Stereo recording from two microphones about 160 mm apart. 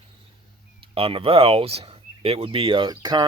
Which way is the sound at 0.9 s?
35° right (ahead or behind).